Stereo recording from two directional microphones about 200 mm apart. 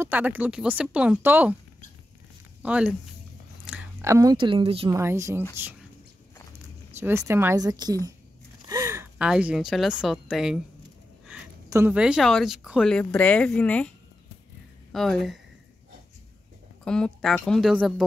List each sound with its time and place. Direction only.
0.0 s speech: 10° right (ahead or behind)
2.6 s speech: 5° right (ahead or behind); by 4.9 s 25° right (ahead or behind)
4.9 s speech: 15° right (ahead or behind)
7.0 s a woman's voice: 15° right (ahead or behind)
11.7 s a woman's voice: 10° right (ahead or behind)
16.8 s speech: 5° left (ahead or behind)